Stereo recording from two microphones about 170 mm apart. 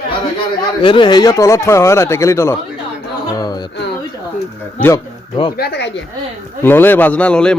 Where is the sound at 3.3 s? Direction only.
25° left (ahead or behind).